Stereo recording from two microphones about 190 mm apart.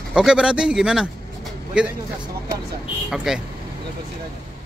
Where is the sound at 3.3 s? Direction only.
5° right (ahead or behind).